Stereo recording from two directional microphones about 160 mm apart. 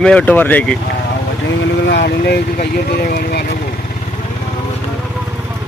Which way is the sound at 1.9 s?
85° left.